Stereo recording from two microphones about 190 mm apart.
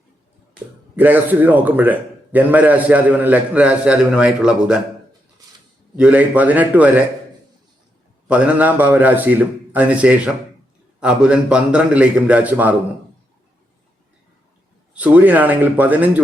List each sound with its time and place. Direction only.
0.9 s a man's voice: 10° right (ahead or behind)
6.0 s a man's voice: 10° right (ahead or behind)
8.3 s a man's voice: 5° right (ahead or behind)
14.9 s a man's voice: 5° right (ahead or behind)